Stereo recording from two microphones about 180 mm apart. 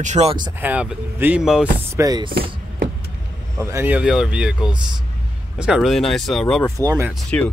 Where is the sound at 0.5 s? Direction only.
10° right (ahead or behind).